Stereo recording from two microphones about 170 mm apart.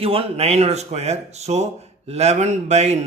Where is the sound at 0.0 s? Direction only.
35° right (ahead or behind).